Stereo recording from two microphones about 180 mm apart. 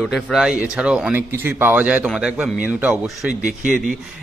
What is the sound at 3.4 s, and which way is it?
Speech, 45° right (ahead or behind).